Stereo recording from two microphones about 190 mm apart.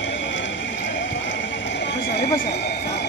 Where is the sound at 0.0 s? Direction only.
75° left (ahead or behind).